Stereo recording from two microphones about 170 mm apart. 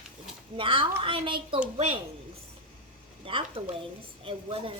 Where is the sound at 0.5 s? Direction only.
30° right (ahead or behind).